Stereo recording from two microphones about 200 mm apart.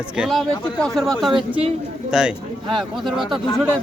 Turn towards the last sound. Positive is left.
turn(degrees=0)  # may be behind; listen again after turning